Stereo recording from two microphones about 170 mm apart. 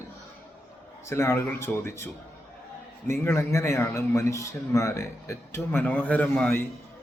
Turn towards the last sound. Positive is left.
turn(degrees=10)  # may be behind; listen again after turning